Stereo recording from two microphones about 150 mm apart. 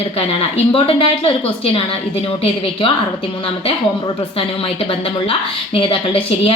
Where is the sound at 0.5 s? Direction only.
40° left (ahead or behind).